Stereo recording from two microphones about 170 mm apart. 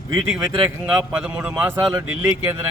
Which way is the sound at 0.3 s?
5° right (ahead or behind).